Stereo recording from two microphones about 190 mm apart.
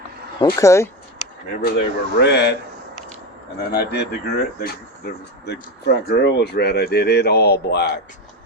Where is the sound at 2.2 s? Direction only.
60° left (ahead or behind).